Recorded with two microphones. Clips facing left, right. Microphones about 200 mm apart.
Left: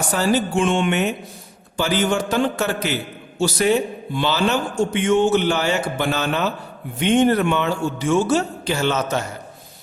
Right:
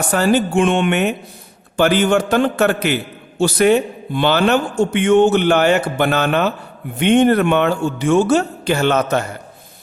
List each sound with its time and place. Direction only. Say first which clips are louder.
0.1 s a man's voice: right 4 dB; 60° right (ahead or behind)